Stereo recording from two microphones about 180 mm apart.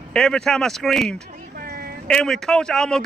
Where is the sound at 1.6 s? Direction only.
55° right (ahead or behind).